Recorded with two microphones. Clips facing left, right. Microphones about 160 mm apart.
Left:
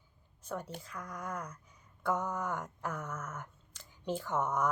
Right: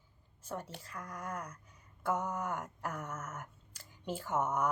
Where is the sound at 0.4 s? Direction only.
5° right (ahead or behind).